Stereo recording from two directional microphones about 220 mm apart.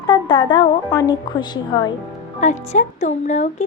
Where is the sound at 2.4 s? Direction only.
30° left (ahead or behind).